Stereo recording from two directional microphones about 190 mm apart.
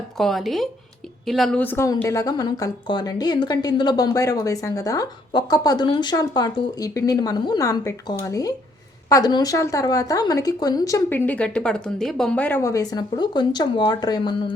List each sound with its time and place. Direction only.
0.2 s a woman's voice: centre (ahead or behind); by 14.5 s 25° left (ahead or behind)